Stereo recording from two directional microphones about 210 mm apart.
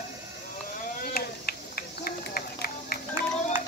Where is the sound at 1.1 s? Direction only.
45° left (ahead or behind).